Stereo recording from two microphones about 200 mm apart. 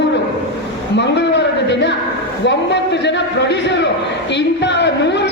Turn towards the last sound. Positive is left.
turn(degrees=60)  # may be behind; listen again after turning